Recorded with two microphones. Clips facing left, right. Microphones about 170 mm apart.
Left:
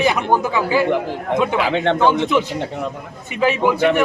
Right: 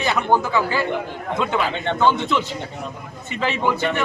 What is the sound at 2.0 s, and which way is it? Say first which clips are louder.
Speech: left 3 dB; 15° left (ahead or behind).